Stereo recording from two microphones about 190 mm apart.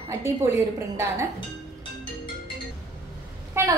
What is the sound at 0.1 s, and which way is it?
A woman's voice, 15° right (ahead or behind).